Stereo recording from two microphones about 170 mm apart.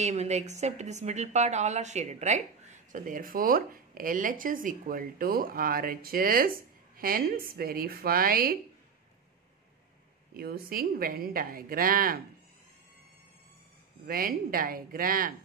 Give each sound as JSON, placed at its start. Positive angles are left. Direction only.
{"t": 0.0, "sound": "a woman's voice", "side_deg": -40}
{"t": 10.3, "sound": "a woman's voice", "side_deg": -60}
{"t": 14.0, "sound": "a woman's voice", "side_deg": -60}